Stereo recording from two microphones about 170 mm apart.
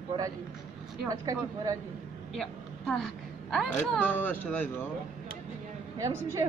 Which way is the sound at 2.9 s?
5° left (ahead or behind).